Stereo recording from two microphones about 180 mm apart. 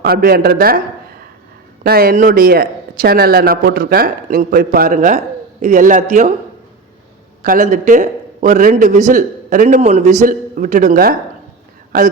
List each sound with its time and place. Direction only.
0.0 s speech: 55° right (ahead or behind)
1.8 s a man's voice: 60° right (ahead or behind); by 6.3 s 40° right (ahead or behind)
7.4 s a man's voice: 50° right (ahead or behind)